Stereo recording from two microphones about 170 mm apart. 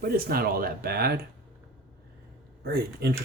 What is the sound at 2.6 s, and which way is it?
Speech, 70° right (ahead or behind).